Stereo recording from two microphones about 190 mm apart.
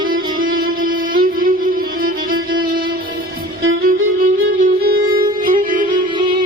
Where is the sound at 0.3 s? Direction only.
50° right (ahead or behind).